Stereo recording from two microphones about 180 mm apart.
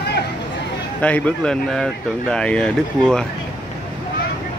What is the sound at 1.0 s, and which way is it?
Speech, 5° left (ahead or behind).